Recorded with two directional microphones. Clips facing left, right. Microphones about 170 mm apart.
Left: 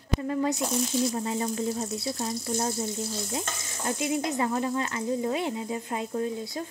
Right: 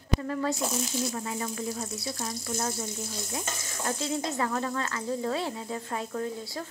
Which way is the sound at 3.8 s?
15° left (ahead or behind).